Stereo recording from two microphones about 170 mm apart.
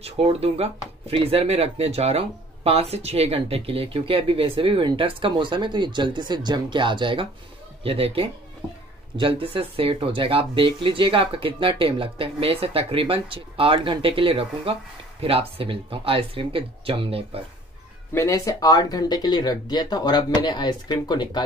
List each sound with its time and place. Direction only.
0.0 s speech: 35° right (ahead or behind)
18.1 s speech: 15° left (ahead or behind)